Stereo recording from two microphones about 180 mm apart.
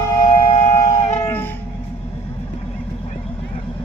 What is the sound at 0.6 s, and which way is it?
Shofar, 40° left (ahead or behind).